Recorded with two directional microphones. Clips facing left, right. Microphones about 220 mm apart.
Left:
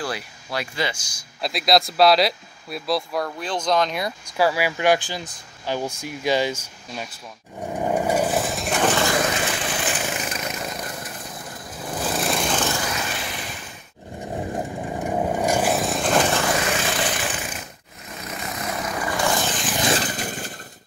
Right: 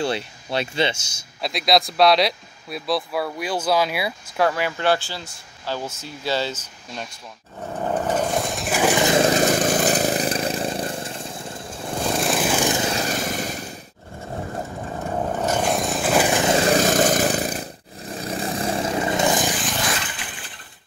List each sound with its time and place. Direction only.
0.0 s speech: 25° right (ahead or behind)
1.4 s speech: centre (ahead or behind)
4.4 s speech: 10° left (ahead or behind)
7.6 s lawn mower: 10° left (ahead or behind); by 9.0 s 10° right (ahead or behind)
9.0 s vehicle: 25° right (ahead or behind)
9.3 s a sound: 40° right (ahead or behind)
12.0 s lawn mower: centre (ahead or behind)
12.7 s vehicle: 25° right (ahead or behind)
13.0 s vehicle: 45° right (ahead or behind)
14.2 s a sound: 15° left (ahead or behind); by 16.5 s 15° right (ahead or behind)
16.5 s a sound: 35° right (ahead or behind); by 19.6 s 15° right (ahead or behind)
19.9 s a sound: 40° left (ahead or behind)